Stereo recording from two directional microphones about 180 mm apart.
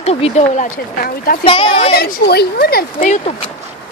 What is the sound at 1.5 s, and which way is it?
Speech, 30° left (ahead or behind).